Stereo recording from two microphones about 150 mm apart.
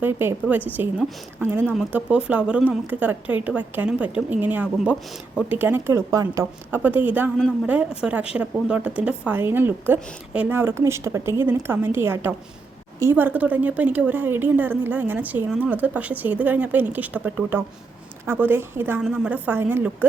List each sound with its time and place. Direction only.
0.0 s a woman's voice: 15° right (ahead or behind)
1.6 s a woman's voice: centre (ahead or behind)